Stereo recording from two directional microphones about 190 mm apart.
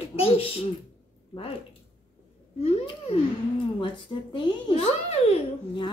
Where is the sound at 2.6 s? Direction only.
30° left (ahead or behind).